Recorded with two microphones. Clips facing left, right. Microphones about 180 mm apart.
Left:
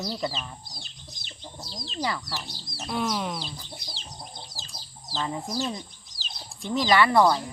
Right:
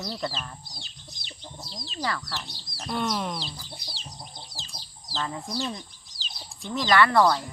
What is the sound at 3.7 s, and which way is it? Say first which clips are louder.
Chicken: left 1 dB; centre (ahead or behind).